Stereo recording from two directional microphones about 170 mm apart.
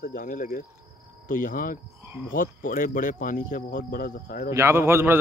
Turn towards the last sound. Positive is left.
turn(degrees=-15)  # may be behind; listen again after turning